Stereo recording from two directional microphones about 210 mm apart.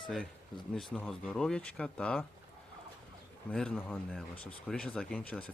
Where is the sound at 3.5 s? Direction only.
5° left (ahead or behind).